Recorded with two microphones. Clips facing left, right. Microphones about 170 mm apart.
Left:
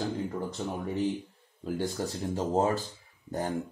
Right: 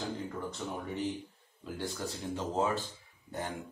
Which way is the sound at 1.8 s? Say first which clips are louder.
Left 5 dB; 40° left (ahead or behind).